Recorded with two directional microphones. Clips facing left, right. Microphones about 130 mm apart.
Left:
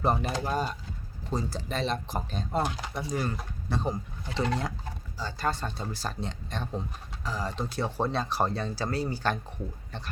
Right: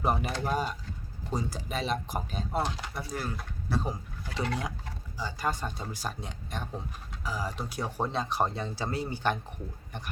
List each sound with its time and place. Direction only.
0.0 s speech: 10° right (ahead or behind)
0.3 s speech: 5° left (ahead or behind)
0.5 s speech: 10° right (ahead or behind)
5.1 s speech: 15° right (ahead or behind)